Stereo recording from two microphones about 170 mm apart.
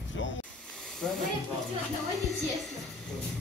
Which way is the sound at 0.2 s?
90° left.